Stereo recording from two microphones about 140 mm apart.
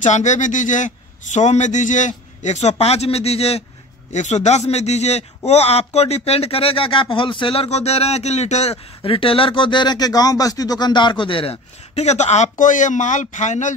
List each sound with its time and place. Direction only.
0.0 s a man's voice: 60° left (ahead or behind)
9.0 s speech: 40° left (ahead or behind); by 13.7 s 60° left (ahead or behind)